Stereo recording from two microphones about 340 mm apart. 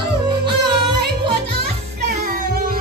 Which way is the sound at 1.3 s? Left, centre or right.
Right.